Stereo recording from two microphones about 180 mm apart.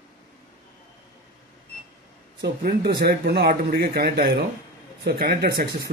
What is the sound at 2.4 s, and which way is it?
Speech, 60° right (ahead or behind).